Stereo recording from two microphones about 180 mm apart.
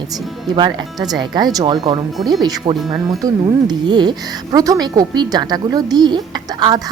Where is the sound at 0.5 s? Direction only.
25° right (ahead or behind).